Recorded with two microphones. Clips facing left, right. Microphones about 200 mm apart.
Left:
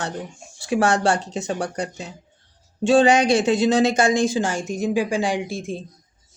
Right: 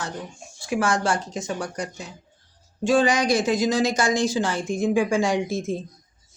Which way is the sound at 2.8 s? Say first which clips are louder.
Left 4 dB; 30° left (ahead or behind).